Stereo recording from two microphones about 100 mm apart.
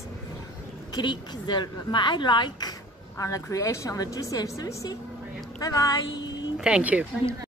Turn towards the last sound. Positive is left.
turn(degrees=-10)  # may be behind; listen again after turning